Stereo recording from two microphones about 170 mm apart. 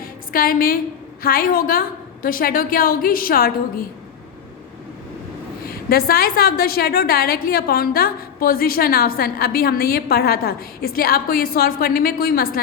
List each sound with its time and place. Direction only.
0.0 s a sound: 60° left (ahead or behind)
1.2 s a woman's voice: 60° left (ahead or behind)
5.6 s a woman's voice: 60° left (ahead or behind)